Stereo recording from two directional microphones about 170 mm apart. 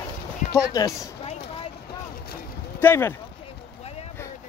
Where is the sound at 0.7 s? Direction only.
20° left (ahead or behind).